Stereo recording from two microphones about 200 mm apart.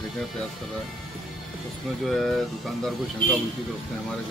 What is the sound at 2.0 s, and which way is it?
Speech, centre (ahead or behind).